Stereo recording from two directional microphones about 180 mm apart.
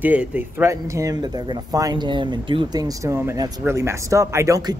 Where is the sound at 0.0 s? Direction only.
10° right (ahead or behind).